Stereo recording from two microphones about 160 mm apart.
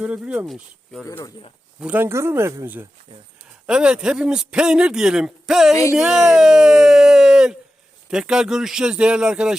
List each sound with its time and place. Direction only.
0.0 s a man's voice: 10° right (ahead or behind)
1.0 s speech: 20° left (ahead or behind)
1.8 s a man's voice: 10° right (ahead or behind)